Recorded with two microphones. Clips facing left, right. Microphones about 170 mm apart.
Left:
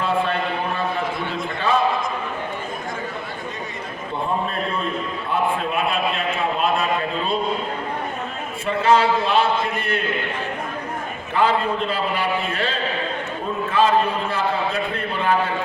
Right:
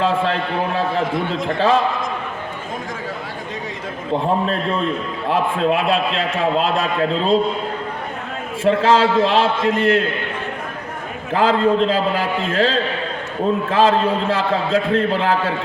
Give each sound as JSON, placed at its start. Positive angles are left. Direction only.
{"t": 0.8, "sound": "a man's voice", "side_deg": -90}
{"t": 5.3, "sound": "a man's voice", "side_deg": -90}
{"t": 8.6, "sound": "a man's voice", "side_deg": -90}
{"t": 11.3, "sound": "a man's voice", "side_deg": -90}